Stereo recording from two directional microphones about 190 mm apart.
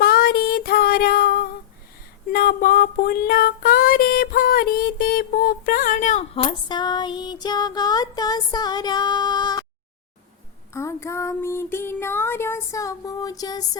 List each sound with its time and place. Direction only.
0.0 s a sound: 50° left (ahead or behind)
2.3 s female singing: 50° left (ahead or behind); by 9.6 s 20° left (ahead or behind)
10.8 s child singing: 15° left (ahead or behind)